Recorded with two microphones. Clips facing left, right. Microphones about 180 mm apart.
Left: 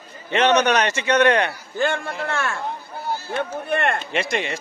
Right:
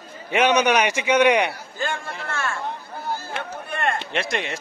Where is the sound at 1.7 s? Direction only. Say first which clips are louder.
Left 8 dB; 60° left (ahead or behind).